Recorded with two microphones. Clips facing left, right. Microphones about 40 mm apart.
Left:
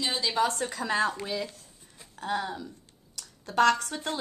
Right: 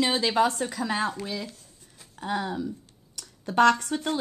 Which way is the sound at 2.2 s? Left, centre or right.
Centre.